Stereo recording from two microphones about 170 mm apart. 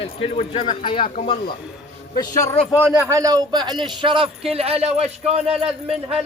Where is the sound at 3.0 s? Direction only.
20° right (ahead or behind); by 5.7 s 35° right (ahead or behind).